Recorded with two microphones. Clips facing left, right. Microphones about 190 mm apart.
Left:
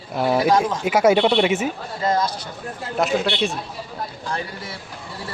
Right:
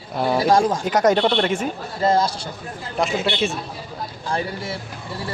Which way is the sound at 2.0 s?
30° right (ahead or behind).